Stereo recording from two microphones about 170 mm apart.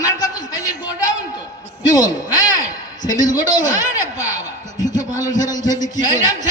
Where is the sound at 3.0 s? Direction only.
50° left (ahead or behind).